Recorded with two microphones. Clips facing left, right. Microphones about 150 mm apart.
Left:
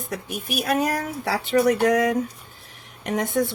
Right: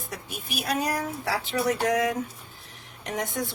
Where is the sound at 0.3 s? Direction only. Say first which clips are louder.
Left 5 dB; 55° left (ahead or behind).